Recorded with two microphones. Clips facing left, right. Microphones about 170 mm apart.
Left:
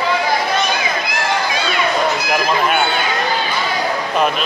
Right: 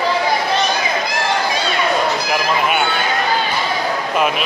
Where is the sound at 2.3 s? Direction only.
5° right (ahead or behind).